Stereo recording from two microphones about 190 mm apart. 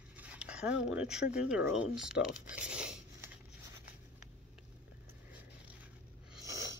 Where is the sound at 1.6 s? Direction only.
65° left (ahead or behind).